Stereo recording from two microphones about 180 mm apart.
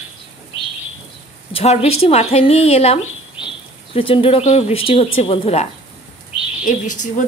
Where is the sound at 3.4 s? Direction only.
5° right (ahead or behind).